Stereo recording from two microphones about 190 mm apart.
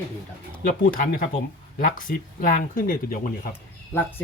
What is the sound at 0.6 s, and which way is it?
Speech, 45° left (ahead or behind).